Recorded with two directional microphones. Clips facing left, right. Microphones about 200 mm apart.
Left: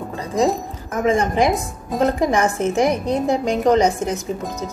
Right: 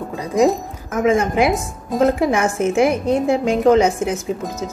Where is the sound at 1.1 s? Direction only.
5° right (ahead or behind).